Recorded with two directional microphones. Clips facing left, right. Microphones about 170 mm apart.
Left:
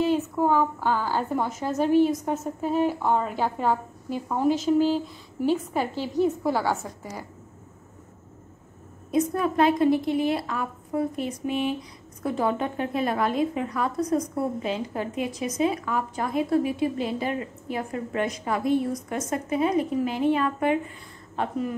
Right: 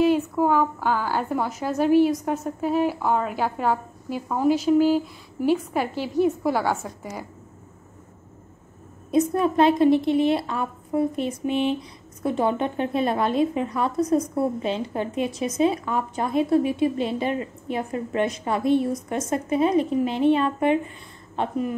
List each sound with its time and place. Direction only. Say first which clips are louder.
0.0 s a woman's voice: right 3 dB; 10° right (ahead or behind)
9.1 s a woman's voice: right 3 dB; 25° right (ahead or behind)